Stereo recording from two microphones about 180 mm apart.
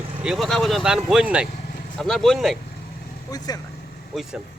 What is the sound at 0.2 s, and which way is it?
Speech, centre (ahead or behind).